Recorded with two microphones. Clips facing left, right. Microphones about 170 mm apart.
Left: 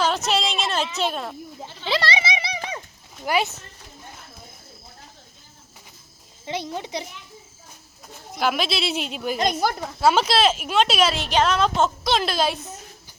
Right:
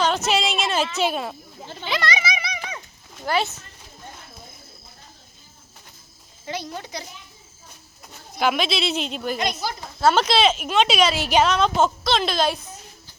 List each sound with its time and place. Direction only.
0.0 s a sound: centre (ahead or behind)
0.9 s speech: 5° right (ahead or behind)
1.9 s a sound: 30° left (ahead or behind)
3.2 s speech: 15° left (ahead or behind)
6.4 s speech: 25° left (ahead or behind)
8.4 s speech: centre (ahead or behind)
9.4 s speech: 50° left (ahead or behind)
10.0 s speech: 10° left (ahead or behind)